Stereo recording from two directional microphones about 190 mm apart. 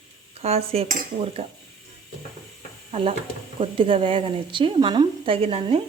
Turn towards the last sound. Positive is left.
turn(degrees=-30)  # may be behind; listen again after turning